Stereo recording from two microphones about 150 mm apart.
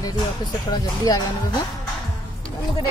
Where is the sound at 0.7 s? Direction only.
25° left (ahead or behind).